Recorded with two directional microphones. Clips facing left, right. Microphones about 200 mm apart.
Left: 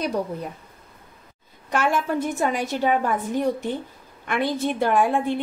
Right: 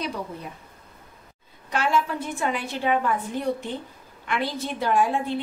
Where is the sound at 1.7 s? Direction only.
50° left (ahead or behind).